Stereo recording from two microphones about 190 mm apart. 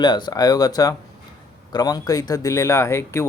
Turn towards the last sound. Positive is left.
turn(degrees=15)  # may be behind; listen again after turning